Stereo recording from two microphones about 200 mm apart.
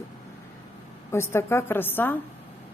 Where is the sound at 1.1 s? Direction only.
15° left (ahead or behind).